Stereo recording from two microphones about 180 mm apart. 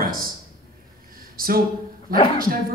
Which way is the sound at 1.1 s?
55° right (ahead or behind).